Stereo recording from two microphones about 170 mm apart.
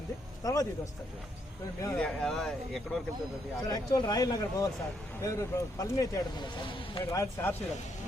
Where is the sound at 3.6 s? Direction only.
20° left (ahead or behind).